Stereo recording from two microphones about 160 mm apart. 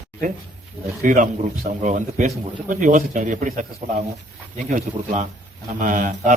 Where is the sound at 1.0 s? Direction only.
55° right (ahead or behind).